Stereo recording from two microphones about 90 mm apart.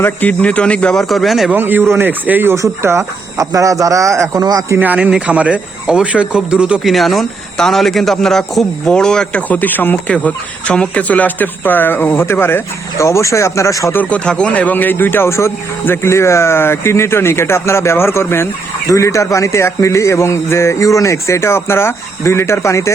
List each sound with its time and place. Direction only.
0.0 s a man's voice: 20° left (ahead or behind)
1.0 s a man's voice: centre (ahead or behind)
1.5 s speech: 20° right (ahead or behind)
4.7 s speech: 20° right (ahead or behind)
6.9 s a man's voice: centre (ahead or behind); by 13.9 s 35° left (ahead or behind)
13.9 s speech: 15° left (ahead or behind); by 22.9 s 30° left (ahead or behind)